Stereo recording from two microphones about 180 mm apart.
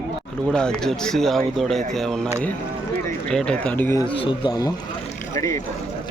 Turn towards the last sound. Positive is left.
turn(degrees=20)  # may be behind; listen again after turning